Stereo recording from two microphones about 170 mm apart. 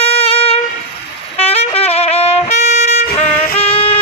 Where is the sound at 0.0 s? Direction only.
35° left (ahead or behind).